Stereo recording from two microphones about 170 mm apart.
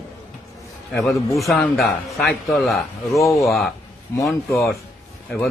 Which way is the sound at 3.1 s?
20° left (ahead or behind).